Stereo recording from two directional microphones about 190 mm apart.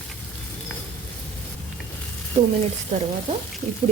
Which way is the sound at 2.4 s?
35° right (ahead or behind).